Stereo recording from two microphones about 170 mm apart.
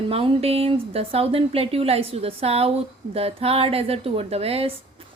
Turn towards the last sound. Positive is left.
turn(degrees=-35)  # may be behind; listen again after turning